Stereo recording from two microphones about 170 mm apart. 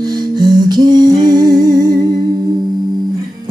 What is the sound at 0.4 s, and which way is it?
Music, 25° right (ahead or behind).